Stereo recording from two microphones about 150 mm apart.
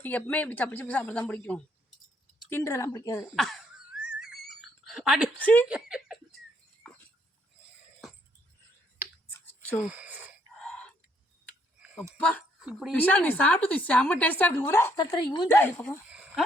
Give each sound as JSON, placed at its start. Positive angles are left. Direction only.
{"t": 0.0, "sound": "a woman's voice", "side_deg": 10}
{"t": 2.5, "sound": "speech", "side_deg": 20}
{"t": 3.3, "sound": "wail", "side_deg": 0}
{"t": 5.4, "sound": "a woman's voice", "side_deg": 10}
{"t": 5.6, "sound": "speech", "side_deg": -5}
{"t": 9.3, "sound": "a sound", "side_deg": 15}
{"t": 9.8, "sound": "speech", "side_deg": -10}
{"t": 10.6, "sound": "a sound", "side_deg": 5}
{"t": 12.9, "sound": "a woman's voice", "side_deg": 10}
{"t": 14.9, "sound": "speech", "side_deg": 30}
{"t": 15.5, "sound": "a woman's voice", "side_deg": 15}
{"t": 16.1, "sound": "a sound", "side_deg": -10}